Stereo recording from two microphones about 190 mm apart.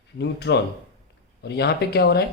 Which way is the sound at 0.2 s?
65° left (ahead or behind).